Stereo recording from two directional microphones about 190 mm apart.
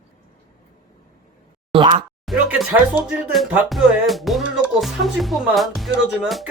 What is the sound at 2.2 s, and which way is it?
Speech, centre (ahead or behind).